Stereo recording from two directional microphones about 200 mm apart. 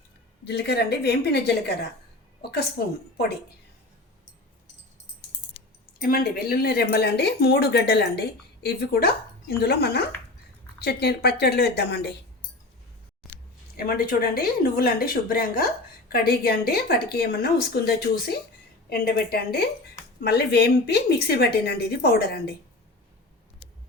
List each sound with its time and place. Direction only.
0.4 s a woman's voice: 55° left (ahead or behind)
6.0 s speech: 50° left (ahead or behind)
13.2 s speech: 50° left (ahead or behind)